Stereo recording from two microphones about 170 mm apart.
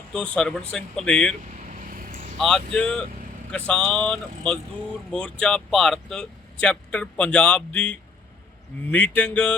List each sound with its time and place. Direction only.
0.1 s speech: 5° left (ahead or behind)
1.5 s vehicle: 50° right (ahead or behind)
2.4 s speech: 5° left (ahead or behind)